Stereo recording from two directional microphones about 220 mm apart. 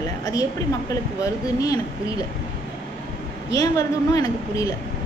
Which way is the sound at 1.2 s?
15° left (ahead or behind).